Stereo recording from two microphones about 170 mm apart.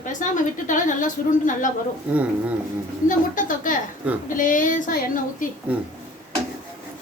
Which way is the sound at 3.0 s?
50° left (ahead or behind).